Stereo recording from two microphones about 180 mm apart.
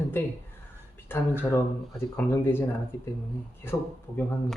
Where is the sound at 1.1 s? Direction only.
10° left (ahead or behind).